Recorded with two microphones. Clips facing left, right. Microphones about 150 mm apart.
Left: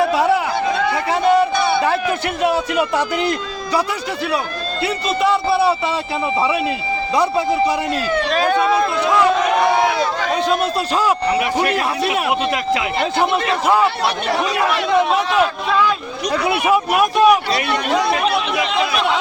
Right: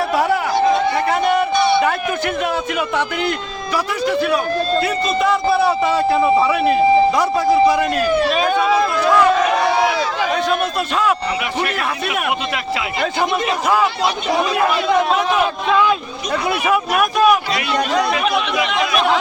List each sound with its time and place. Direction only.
2.4 s speech: 35° left (ahead or behind)
4.8 s speech: 25° left (ahead or behind)
8.1 s speech: 10° right (ahead or behind)
11.6 s speech: 30° left (ahead or behind)
16.5 s speech: 5° left (ahead or behind)
17.0 s speech: 30° left (ahead or behind)